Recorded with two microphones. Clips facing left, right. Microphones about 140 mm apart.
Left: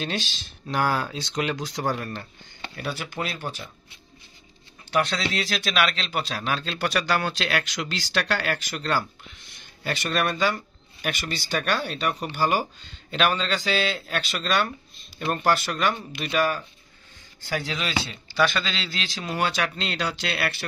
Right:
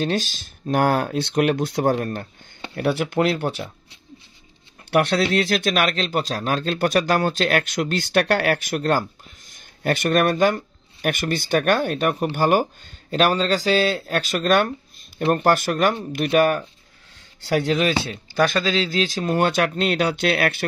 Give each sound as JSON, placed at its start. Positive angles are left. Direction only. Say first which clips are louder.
{"t": 0.0, "sound": "speech", "louder": "right 7 dB", "side_deg": -45}
{"t": 2.7, "sound": "speech", "louder": "right 11 dB", "side_deg": -60}
{"t": 4.9, "sound": "speech", "louder": "right 7 dB", "side_deg": -60}
{"t": 18.0, "sound": "speech", "louder": "right 3 dB", "side_deg": -45}